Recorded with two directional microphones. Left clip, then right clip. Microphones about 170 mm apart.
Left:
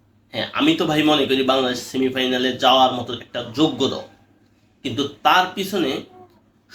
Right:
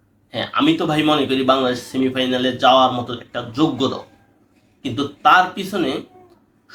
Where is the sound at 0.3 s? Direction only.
15° right (ahead or behind).